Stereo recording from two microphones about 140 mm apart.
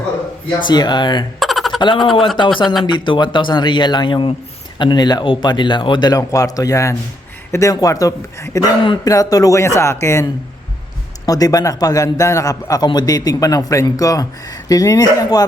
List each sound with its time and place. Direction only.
0.6 s speech: 30° left (ahead or behind)
1.4 s a sound: centre (ahead or behind)
1.8 s a man's voice: 35° left (ahead or behind)